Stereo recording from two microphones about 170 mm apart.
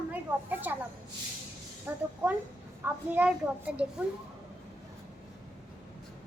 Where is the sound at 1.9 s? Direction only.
10° right (ahead or behind).